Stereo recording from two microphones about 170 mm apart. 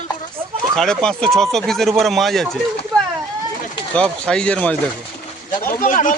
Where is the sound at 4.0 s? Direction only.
5° left (ahead or behind).